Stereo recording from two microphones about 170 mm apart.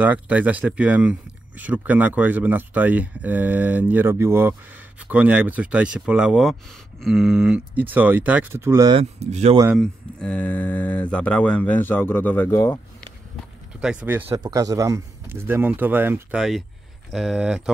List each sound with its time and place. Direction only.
0.0 s speech: 10° right (ahead or behind)
8.9 s speech: 40° right (ahead or behind)
9.8 s speech: 5° left (ahead or behind)
13.7 s speech: 5° right (ahead or behind)
14.3 s speech: 20° right (ahead or behind); by 17.7 s 5° right (ahead or behind)